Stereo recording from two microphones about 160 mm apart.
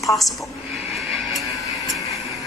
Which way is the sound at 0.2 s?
Centre (ahead or behind).